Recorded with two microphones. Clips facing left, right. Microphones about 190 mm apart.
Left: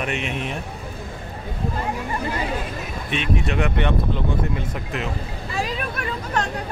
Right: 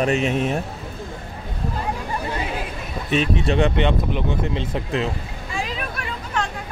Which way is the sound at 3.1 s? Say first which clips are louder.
Right 4 dB; 35° right (ahead or behind).